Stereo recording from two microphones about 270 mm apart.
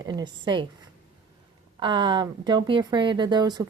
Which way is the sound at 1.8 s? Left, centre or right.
Centre.